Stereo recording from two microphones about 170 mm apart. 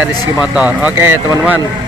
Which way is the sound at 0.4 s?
10° right (ahead or behind).